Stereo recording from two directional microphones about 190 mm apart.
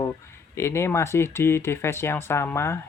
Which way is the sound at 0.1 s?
15° left (ahead or behind).